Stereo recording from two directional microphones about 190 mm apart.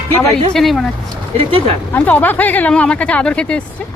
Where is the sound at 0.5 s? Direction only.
Centre (ahead or behind).